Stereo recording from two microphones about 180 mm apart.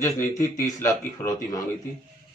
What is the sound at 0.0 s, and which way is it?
Speech, 15° left (ahead or behind).